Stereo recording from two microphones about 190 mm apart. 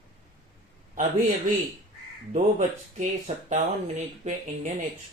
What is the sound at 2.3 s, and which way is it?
Speech, 40° right (ahead or behind).